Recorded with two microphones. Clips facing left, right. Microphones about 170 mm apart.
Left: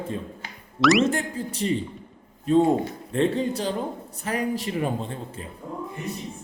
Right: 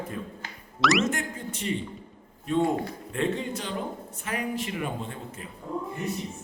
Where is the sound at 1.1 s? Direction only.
30° left (ahead or behind).